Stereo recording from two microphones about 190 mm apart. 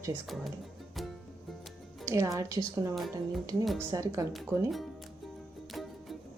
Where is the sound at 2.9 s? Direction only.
Centre (ahead or behind).